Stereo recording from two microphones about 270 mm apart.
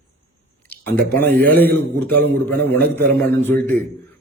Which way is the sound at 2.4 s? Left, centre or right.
Centre.